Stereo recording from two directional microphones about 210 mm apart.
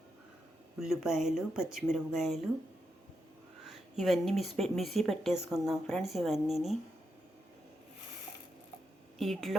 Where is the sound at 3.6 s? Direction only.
Centre (ahead or behind).